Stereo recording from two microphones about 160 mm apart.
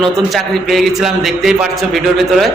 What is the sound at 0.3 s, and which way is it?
A man's voice, centre (ahead or behind).